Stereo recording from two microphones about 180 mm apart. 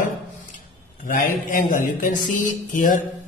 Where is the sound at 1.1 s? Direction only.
50° left (ahead or behind).